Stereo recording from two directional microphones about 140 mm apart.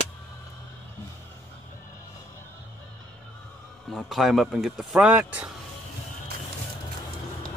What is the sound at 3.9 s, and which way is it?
Speech, centre (ahead or behind).